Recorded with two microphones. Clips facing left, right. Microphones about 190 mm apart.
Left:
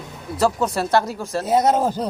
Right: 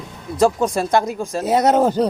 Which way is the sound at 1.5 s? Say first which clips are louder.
Right 3 dB; 70° right (ahead or behind).